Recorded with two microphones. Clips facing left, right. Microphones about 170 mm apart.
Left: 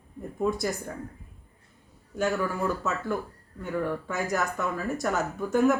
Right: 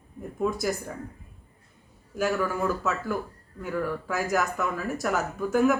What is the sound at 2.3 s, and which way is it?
Speech, 20° left (ahead or behind).